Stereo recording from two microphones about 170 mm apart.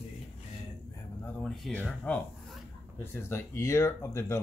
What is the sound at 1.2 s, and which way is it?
Speech, 5° left (ahead or behind).